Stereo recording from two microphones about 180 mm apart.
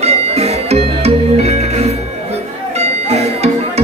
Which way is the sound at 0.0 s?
35° right (ahead or behind).